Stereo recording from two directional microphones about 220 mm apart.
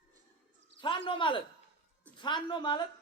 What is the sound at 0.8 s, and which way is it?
Speech, 25° left (ahead or behind).